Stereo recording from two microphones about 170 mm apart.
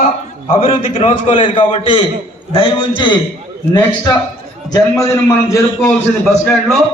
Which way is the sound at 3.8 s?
15° left (ahead or behind).